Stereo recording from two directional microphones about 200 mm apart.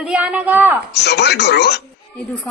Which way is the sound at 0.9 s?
55° left (ahead or behind).